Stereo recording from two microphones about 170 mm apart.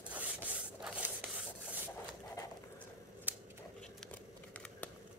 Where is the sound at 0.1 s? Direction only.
5° right (ahead or behind).